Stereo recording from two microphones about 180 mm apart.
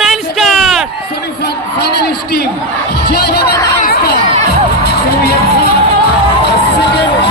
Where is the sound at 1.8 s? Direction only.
60° left (ahead or behind).